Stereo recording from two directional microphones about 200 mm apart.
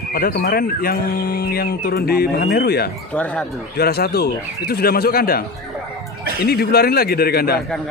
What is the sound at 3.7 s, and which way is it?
Speech, 50° left (ahead or behind).